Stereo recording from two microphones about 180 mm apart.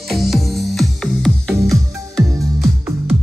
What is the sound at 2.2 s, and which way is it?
Music, 20° right (ahead or behind).